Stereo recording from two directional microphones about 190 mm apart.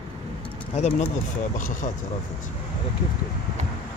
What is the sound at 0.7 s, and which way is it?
Speech, 40° left (ahead or behind).